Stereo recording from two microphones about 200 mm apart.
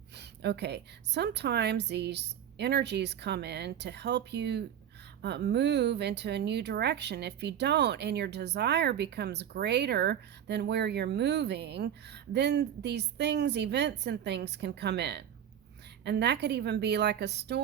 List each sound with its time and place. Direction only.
0.2 s speech: 55° right (ahead or behind)